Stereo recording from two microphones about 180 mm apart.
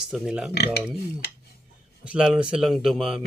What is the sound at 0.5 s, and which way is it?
Speech, 65° left (ahead or behind).